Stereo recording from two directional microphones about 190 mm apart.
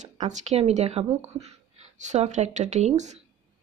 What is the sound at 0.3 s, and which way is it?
Speech, 35° right (ahead or behind).